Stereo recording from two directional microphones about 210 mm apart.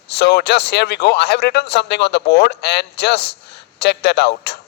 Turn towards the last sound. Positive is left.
turn(degrees=50)  # may be behind; listen again after turning